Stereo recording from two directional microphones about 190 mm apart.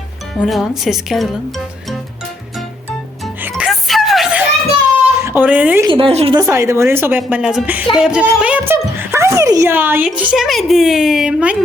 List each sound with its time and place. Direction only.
0.3 s speech: centre (ahead or behind)
3.5 s music: centre (ahead or behind)
5.2 s speech: 10° right (ahead or behind)
5.9 s a woman's voice: 30° right (ahead or behind)
6.4 s a woman's voice: 15° right (ahead or behind)